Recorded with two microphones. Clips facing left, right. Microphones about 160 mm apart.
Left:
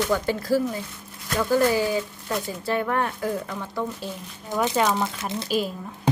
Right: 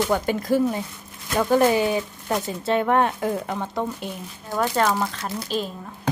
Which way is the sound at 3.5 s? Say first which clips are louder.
Right 3 dB; 55° right (ahead or behind).